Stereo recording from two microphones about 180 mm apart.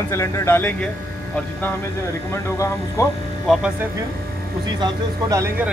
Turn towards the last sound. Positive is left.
turn(degrees=-20)  # may be behind; listen again after turning